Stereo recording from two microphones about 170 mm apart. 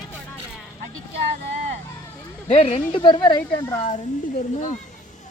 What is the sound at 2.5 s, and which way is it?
Speech, 35° left (ahead or behind).